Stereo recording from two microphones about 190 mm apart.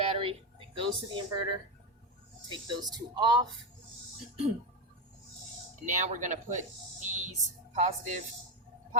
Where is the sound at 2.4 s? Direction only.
20° right (ahead or behind).